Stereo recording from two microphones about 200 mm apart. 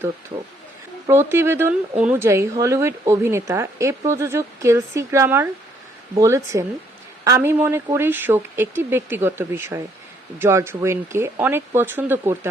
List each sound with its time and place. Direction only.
0.3 s speech: 25° right (ahead or behind)
1.0 s speech: 10° right (ahead or behind)